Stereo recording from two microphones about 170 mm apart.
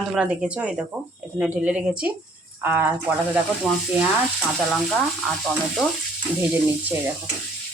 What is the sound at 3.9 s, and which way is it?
Speech, 10° right (ahead or behind).